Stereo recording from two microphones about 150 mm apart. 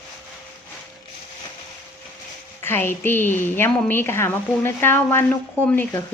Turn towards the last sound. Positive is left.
turn(degrees=15)  # may be behind; listen again after turning